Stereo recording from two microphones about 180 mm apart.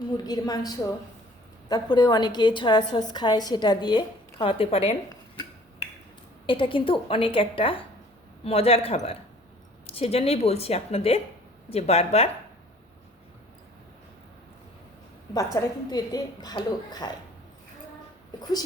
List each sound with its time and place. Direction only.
0.3 s a woman's voice: 20° left (ahead or behind)
6.4 s a woman's voice: 30° left (ahead or behind)
15.6 s a woman's voice: 15° left (ahead or behind)